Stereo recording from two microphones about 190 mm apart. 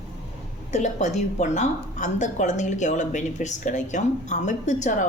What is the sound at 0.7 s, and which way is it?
A woman's voice, 40° left (ahead or behind).